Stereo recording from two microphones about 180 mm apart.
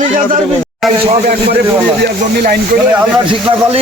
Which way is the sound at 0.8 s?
Centre (ahead or behind).